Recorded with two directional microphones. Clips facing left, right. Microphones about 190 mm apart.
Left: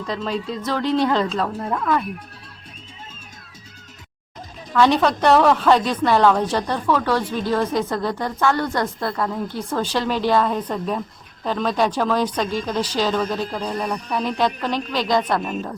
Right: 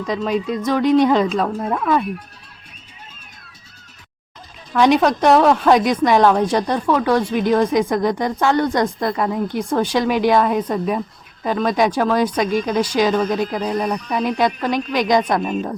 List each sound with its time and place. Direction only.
0.0 s a woman's voice: 15° right (ahead or behind)
4.7 s a woman's voice: 15° right (ahead or behind)
15.4 s a woman's voice: centre (ahead or behind)